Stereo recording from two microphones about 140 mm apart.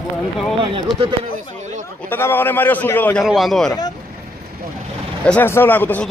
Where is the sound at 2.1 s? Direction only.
15° left (ahead or behind).